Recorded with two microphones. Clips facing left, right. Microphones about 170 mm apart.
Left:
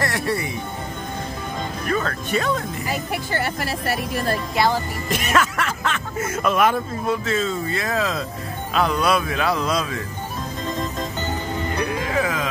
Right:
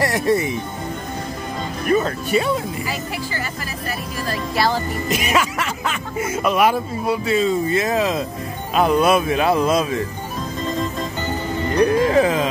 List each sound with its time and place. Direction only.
0.0 s speech: 20° right (ahead or behind)
1.9 s speech: 15° right (ahead or behind)
2.9 s speech: 70° left (ahead or behind)
5.1 s speech: 10° right (ahead or behind)
11.8 s music: 35° right (ahead or behind)